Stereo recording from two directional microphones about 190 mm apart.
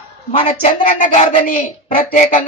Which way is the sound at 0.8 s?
45° left (ahead or behind).